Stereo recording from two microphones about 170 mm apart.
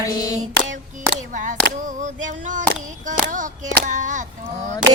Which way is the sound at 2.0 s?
45° right (ahead or behind).